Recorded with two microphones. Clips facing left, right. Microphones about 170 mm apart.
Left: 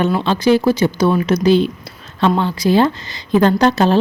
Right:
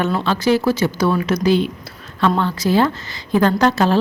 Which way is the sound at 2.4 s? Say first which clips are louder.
Left 3 dB; 15° left (ahead or behind).